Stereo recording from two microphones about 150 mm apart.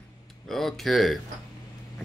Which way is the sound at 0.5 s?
Centre (ahead or behind).